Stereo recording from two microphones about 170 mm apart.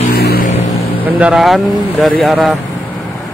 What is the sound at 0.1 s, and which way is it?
Vehicle, 70° left (ahead or behind).